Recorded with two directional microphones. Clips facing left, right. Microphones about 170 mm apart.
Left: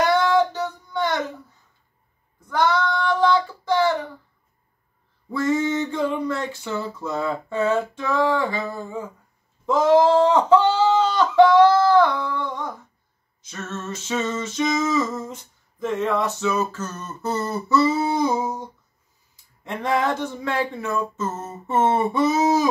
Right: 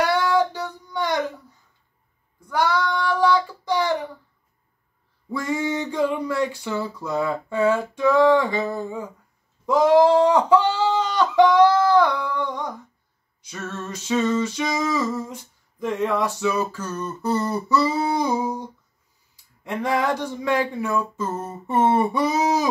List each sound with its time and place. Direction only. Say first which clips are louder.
0.1 s a sound: left 2 dB; 15° right (ahead or behind)
2.5 s child singing: left 1 dB; 10° right (ahead or behind)
5.3 s speech: left 3 dB; 15° right (ahead or behind)
9.7 s a sound: right 1 dB; 15° right (ahead or behind)
13.4 s speech: even; 10° right (ahead or behind)
19.6 s speech: even; 15° right (ahead or behind)